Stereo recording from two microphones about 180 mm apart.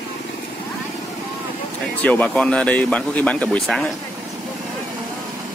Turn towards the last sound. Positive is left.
turn(degrees=5)  # may be behind; listen again after turning